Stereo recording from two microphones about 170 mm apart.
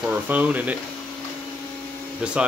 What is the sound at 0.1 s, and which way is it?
Speech, 10° right (ahead or behind).